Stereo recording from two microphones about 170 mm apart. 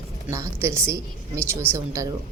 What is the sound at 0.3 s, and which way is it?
A woman's voice, 15° right (ahead or behind).